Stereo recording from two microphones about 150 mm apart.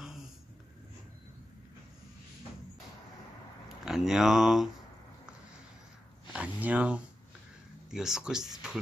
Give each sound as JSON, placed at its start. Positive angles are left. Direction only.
{"t": 3.6, "sound": "speech", "side_deg": 0}
{"t": 6.3, "sound": "a sound", "side_deg": -10}
{"t": 7.9, "sound": "speech", "side_deg": -5}